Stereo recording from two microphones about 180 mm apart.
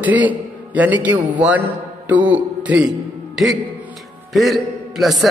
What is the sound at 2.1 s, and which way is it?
Music, 10° right (ahead or behind).